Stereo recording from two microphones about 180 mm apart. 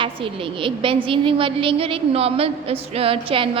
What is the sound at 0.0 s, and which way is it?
A woman's voice, 30° right (ahead or behind).